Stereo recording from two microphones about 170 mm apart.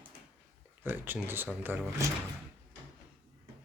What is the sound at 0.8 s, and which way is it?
Speech, 10° right (ahead or behind).